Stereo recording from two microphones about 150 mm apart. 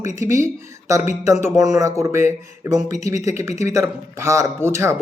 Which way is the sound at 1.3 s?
20° right (ahead or behind).